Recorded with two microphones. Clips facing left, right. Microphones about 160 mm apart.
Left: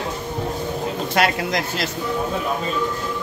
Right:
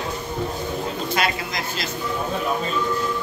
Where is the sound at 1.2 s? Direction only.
70° left (ahead or behind).